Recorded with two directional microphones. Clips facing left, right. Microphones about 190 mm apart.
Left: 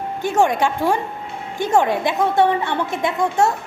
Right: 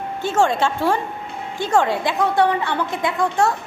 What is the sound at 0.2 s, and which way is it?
A woman's voice, 15° left (ahead or behind).